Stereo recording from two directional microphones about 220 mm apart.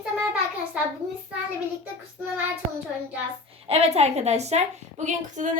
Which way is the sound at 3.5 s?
30° right (ahead or behind).